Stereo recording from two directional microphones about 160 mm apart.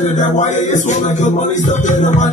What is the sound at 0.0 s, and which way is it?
Music, 50° left (ahead or behind).